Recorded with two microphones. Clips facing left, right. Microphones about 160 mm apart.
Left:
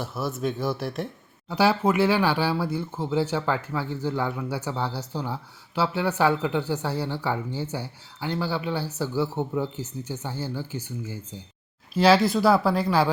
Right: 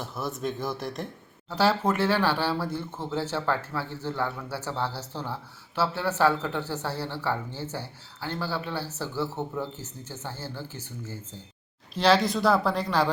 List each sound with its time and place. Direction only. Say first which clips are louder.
0.0 s speech: left 3 dB; 5° left (ahead or behind)